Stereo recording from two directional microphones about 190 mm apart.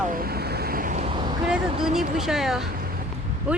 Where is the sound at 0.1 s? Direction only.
50° right (ahead or behind).